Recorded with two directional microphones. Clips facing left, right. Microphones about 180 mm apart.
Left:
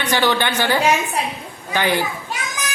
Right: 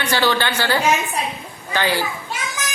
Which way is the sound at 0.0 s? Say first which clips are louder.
Left 1 dB; 15° left (ahead or behind).